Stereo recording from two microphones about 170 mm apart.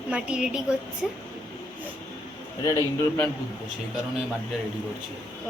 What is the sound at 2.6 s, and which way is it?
Speech, 20° left (ahead or behind).